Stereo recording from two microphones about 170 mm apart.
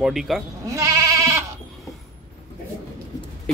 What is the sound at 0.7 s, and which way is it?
Sheep, 20° right (ahead or behind).